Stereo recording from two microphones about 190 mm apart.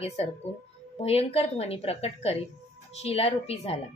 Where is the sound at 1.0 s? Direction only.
30° left (ahead or behind).